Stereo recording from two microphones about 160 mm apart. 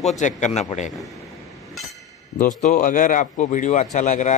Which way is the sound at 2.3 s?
55° left (ahead or behind).